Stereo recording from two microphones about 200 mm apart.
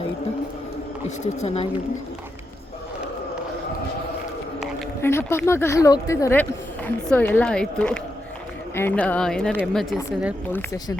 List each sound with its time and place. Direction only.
1.2 s speech: 35° left (ahead or behind)
5.0 s a woman's voice: 10° left (ahead or behind)
10.5 s speech: 10° left (ahead or behind)